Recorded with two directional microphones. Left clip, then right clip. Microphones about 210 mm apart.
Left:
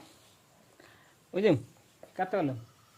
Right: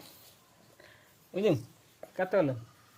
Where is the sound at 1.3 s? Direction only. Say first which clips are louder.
Left 2 dB; 45° left (ahead or behind).